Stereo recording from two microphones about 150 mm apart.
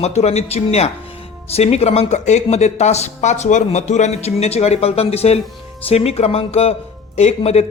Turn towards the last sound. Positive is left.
turn(degrees=45)  # may be behind; listen again after turning